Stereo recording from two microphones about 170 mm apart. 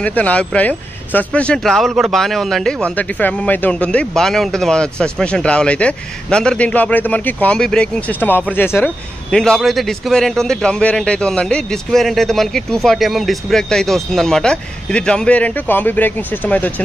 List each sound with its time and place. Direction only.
0.0 s speech: 10° left (ahead or behind)